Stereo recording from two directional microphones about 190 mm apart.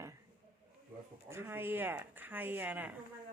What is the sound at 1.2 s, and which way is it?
A woman's voice, 10° right (ahead or behind).